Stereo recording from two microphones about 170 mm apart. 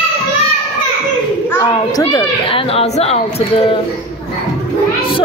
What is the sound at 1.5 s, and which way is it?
A child's voice, 20° left (ahead or behind).